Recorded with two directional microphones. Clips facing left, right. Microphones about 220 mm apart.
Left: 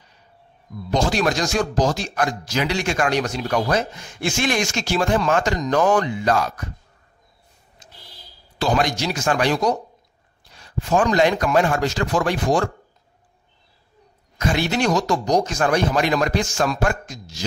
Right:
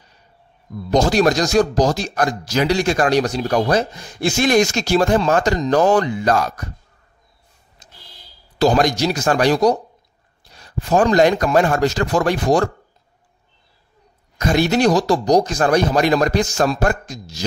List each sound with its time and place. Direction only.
0.8 s speech: 40° right (ahead or behind)
7.8 s a sound: 40° right (ahead or behind)
8.5 s speech: 40° right (ahead or behind)
14.4 s speech: 40° right (ahead or behind)